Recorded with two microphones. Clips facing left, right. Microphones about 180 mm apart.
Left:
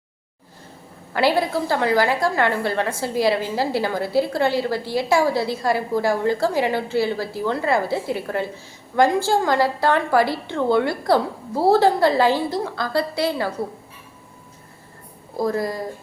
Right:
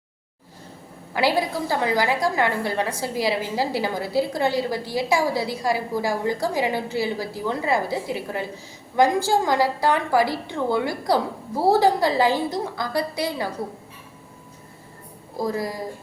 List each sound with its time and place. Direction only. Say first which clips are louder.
1.1 s a woman's voice: left 3 dB; 15° right (ahead or behind)